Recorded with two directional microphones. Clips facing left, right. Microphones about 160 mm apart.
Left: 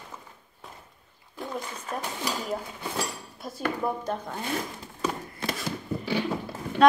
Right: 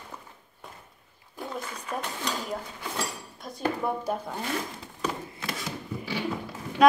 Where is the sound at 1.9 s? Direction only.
Centre (ahead or behind).